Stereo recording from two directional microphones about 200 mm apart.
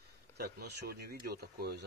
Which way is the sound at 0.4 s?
55° right (ahead or behind).